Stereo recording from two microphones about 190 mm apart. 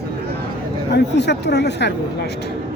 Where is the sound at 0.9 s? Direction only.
65° left (ahead or behind).